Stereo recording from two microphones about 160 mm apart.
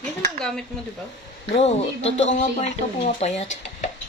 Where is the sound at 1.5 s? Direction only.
40° left (ahead or behind).